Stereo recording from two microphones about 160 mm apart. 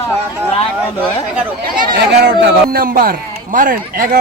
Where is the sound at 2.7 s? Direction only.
65° right (ahead or behind).